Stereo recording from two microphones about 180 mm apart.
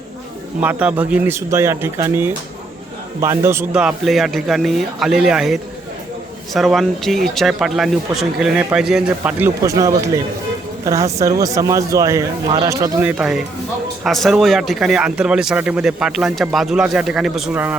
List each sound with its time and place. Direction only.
0.6 s speech: 10° right (ahead or behind)